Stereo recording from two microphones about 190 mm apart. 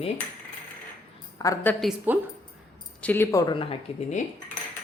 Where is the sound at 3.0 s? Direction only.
10° left (ahead or behind); by 3.7 s 25° left (ahead or behind).